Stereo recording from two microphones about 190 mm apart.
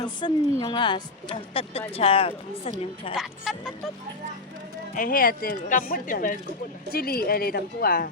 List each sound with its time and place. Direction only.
0.0 s a woman's voice: 25° left (ahead or behind)
3.5 s speech: centre (ahead or behind)
4.9 s a woman's voice: 45° left (ahead or behind)